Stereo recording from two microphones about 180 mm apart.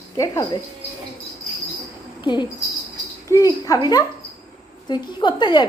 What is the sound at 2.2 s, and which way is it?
A woman's voice, 25° left (ahead or behind).